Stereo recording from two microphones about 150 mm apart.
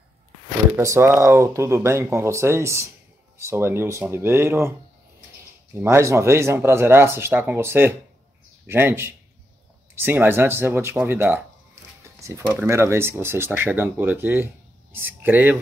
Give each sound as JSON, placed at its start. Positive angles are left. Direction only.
{"t": 0.7, "sound": "speech", "side_deg": -20}
{"t": 5.8, "sound": "speech", "side_deg": -15}
{"t": 12.0, "sound": "a sound", "side_deg": -20}
{"t": 12.5, "sound": "speech", "side_deg": -15}